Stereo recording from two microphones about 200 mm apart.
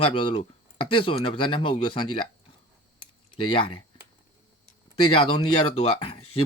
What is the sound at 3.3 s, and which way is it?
Speech, 25° left (ahead or behind).